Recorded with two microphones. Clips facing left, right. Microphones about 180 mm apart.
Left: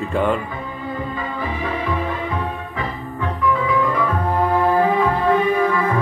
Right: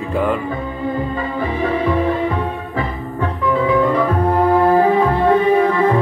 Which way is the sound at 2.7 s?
30° right (ahead or behind).